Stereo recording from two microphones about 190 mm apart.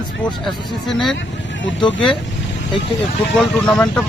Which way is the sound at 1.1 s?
75° left (ahead or behind).